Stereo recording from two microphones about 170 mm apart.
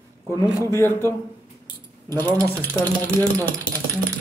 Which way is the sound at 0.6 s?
15° left (ahead or behind).